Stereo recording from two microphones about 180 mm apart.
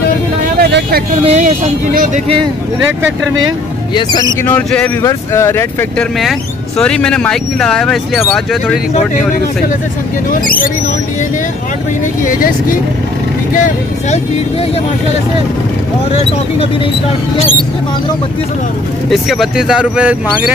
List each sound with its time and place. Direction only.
0.6 s vehicle: 65° right (ahead or behind)
1.2 s speech: 35° right (ahead or behind)
3.9 s speech: 25° left (ahead or behind)
4.5 s speech: 5° left (ahead or behind)
10.4 s speech: 50° left (ahead or behind)
12.3 s speech: 50° left (ahead or behind)
19.0 s speech: centre (ahead or behind)